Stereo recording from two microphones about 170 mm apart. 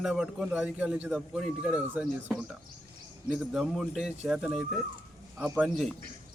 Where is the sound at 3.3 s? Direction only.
Centre (ahead or behind).